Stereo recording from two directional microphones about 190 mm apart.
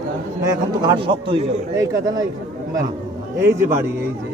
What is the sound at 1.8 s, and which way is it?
Speech, 20° right (ahead or behind).